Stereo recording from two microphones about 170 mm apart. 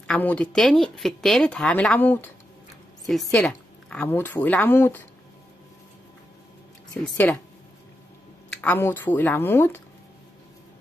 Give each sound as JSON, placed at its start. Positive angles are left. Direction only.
{"t": 0.0, "sound": "a woman's voice", "side_deg": 5}
{"t": 8.5, "sound": "a woman's voice", "side_deg": 10}